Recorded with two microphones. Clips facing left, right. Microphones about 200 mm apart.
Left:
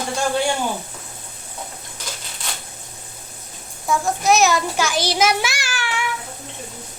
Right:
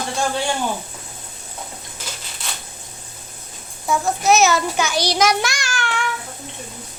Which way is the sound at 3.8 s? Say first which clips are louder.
Right 1 dB; centre (ahead or behind).